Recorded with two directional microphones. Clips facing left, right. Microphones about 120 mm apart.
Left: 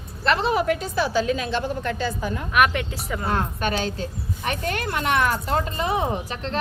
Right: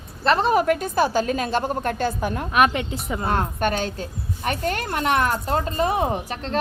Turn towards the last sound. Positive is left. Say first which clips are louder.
# right 2 dB
turn(degrees=-45)  # may be behind; listen again after turning